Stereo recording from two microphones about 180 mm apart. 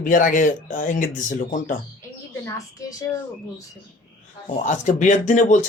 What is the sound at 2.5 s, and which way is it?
Speech, 20° left (ahead or behind).